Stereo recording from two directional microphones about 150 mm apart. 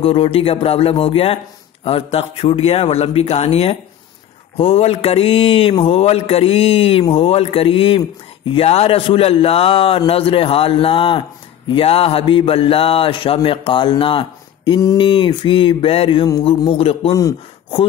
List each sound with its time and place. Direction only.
0.0 s speech: 40° left (ahead or behind)
17.1 s speech: 20° left (ahead or behind)